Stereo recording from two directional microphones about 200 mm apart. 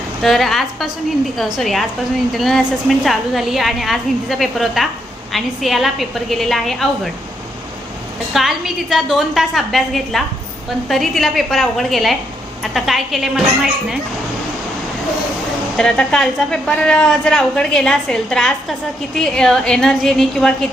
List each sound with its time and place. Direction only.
0.2 s a woman's voice: centre (ahead or behind)
3.0 s a woman's voice: centre (ahead or behind)
8.3 s a woman's voice: centre (ahead or behind)
15.8 s a woman's voice: 5° left (ahead or behind)